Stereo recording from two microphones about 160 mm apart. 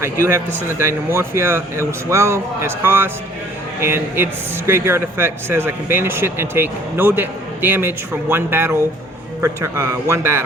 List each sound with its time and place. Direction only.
0.0 s a man's voice: 15° right (ahead or behind)